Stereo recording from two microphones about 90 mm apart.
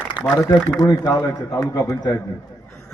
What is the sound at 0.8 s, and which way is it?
Speech, 50° left (ahead or behind).